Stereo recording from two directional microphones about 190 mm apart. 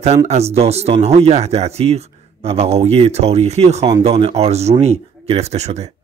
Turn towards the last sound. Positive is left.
turn(degrees=-35)  # may be behind; listen again after turning